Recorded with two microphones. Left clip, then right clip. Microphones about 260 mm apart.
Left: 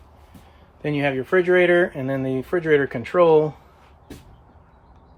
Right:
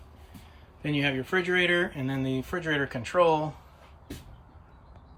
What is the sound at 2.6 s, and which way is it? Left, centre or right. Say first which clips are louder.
Speech: left 11 dB; left.